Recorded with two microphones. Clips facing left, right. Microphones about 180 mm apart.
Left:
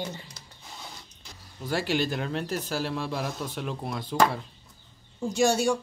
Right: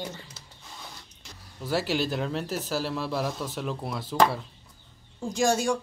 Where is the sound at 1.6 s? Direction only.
5° right (ahead or behind).